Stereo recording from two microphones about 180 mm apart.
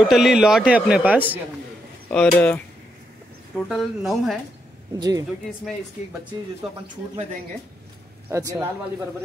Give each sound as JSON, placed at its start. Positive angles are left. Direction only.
{"t": 0.1, "sound": "a man's voice", "side_deg": 0}
{"t": 2.0, "sound": "a man's voice", "side_deg": 10}
{"t": 4.9, "sound": "a woman's voice", "side_deg": -20}
{"t": 8.3, "sound": "speech", "side_deg": -15}